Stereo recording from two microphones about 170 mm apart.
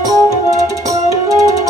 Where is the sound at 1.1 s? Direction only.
20° right (ahead or behind).